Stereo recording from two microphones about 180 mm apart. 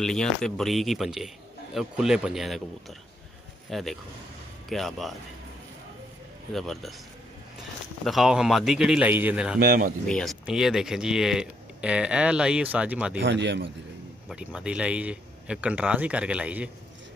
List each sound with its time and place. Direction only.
0.0 s speech: 5° left (ahead or behind)
3.7 s speech: centre (ahead or behind)
6.5 s speech: centre (ahead or behind)
8.0 s speech: centre (ahead or behind)
9.6 s speech: 55° right (ahead or behind)
10.0 s speech: 5° left (ahead or behind)
13.2 s a man's voice: 80° right
14.3 s speech: 5° right (ahead or behind)